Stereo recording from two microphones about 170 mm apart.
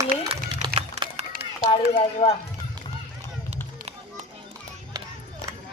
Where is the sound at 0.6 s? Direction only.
30° right (ahead or behind).